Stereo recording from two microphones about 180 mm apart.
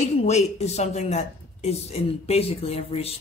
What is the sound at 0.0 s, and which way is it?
Speech, 40° left (ahead or behind).